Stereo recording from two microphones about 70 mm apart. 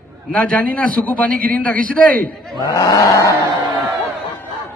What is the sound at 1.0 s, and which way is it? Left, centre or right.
Speech, left.